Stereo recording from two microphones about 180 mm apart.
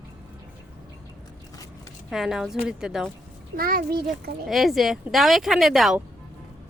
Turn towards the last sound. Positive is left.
turn(degrees=0)  # may be behind; listen again after turning